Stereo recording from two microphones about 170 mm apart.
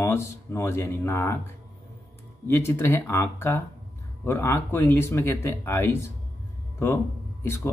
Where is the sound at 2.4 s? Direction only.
15° left (ahead or behind).